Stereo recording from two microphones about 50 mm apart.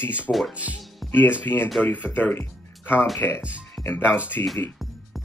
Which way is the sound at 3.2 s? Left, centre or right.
Left.